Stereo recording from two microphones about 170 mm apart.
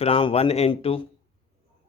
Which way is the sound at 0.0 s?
30° left (ahead or behind).